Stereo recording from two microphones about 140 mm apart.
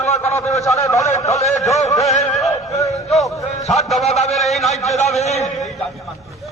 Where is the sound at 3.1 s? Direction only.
Centre (ahead or behind).